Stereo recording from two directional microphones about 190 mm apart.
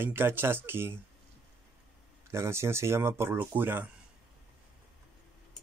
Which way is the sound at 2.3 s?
15° right (ahead or behind).